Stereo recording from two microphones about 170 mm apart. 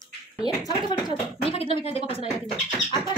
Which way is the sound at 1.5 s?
35° left (ahead or behind).